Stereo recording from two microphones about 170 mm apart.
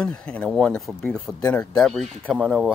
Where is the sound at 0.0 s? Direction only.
5° left (ahead or behind).